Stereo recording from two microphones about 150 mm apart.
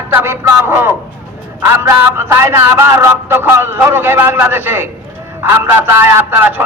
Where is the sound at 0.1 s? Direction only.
15° right (ahead or behind).